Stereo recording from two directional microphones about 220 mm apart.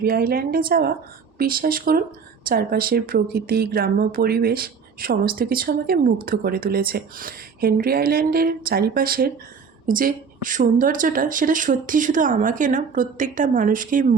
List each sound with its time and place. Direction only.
0.0 s a woman's voice: 45° right (ahead or behind)